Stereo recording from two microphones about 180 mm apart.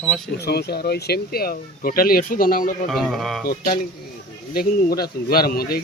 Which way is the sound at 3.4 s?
50° left (ahead or behind).